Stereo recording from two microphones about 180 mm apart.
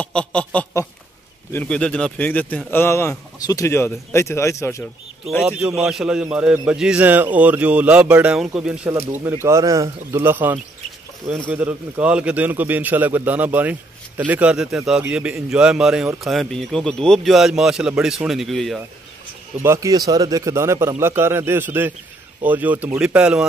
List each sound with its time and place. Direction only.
0.0 s speech: 5° left (ahead or behind)
5.4 s a man's voice: 5° right (ahead or behind)
19.6 s a man's voice: 15° right (ahead or behind)